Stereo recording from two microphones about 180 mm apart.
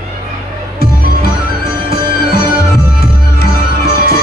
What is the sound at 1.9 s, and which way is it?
Music, 60° left (ahead or behind).